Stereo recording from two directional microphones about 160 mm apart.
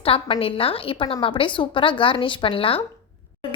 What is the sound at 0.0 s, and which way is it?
A woman's voice, 35° left (ahead or behind).